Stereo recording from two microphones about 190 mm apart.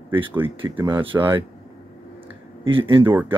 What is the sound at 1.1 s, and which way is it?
Speech, 10° right (ahead or behind).